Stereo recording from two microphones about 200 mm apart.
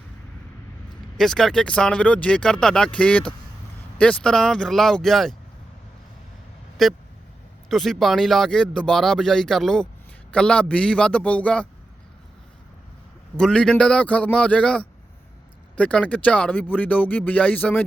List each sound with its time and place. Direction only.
1.2 s speech: centre (ahead or behind)
6.8 s speech: centre (ahead or behind)
13.3 s speech: 5° left (ahead or behind)